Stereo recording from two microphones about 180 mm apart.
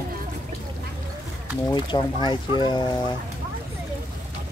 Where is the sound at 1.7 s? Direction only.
25° left (ahead or behind).